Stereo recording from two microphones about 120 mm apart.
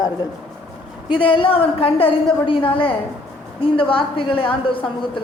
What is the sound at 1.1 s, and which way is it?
A woman's voice, 45° left (ahead or behind).